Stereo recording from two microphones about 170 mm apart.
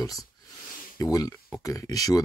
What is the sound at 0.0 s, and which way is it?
Speech, 20° left (ahead or behind).